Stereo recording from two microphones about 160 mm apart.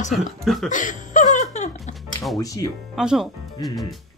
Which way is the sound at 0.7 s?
55° left (ahead or behind).